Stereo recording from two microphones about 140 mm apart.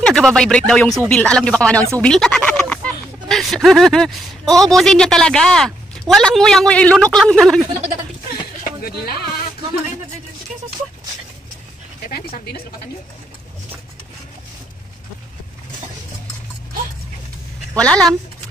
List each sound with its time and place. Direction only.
0.0 s speech: 5° left (ahead or behind)
8.8 s speech: 90° left
12.1 s speech: 90° left
17.7 s speech: 5° left (ahead or behind)